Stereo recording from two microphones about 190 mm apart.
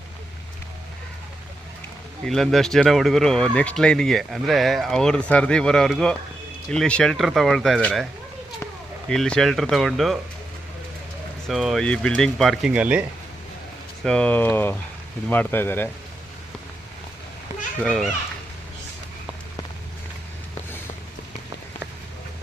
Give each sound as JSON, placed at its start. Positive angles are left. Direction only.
{"t": 2.2, "sound": "speech", "side_deg": 0}
{"t": 9.0, "sound": "speech", "side_deg": 5}
{"t": 11.4, "sound": "speech", "side_deg": 0}
{"t": 14.0, "sound": "speech", "side_deg": 5}
{"t": 17.8, "sound": "speech", "side_deg": 5}